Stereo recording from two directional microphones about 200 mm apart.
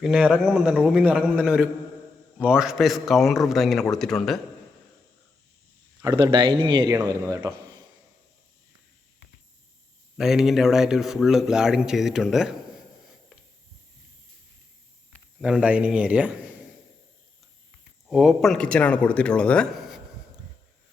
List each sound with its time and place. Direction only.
0.0 s speech: centre (ahead or behind)
6.0 s a man's voice: 20° right (ahead or behind)
10.2 s speech: centre (ahead or behind)
15.1 s speech: 5° right (ahead or behind)
18.1 s speech: centre (ahead or behind)